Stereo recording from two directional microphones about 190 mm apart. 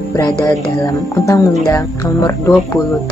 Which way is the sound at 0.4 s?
15° left (ahead or behind).